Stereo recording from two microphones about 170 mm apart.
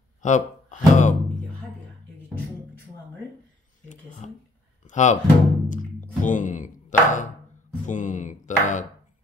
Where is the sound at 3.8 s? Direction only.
45° left (ahead or behind).